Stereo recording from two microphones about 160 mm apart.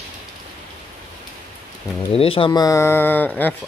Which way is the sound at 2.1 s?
35° left (ahead or behind).